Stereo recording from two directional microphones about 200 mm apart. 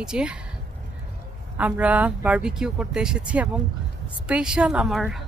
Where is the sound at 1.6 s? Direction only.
5° right (ahead or behind).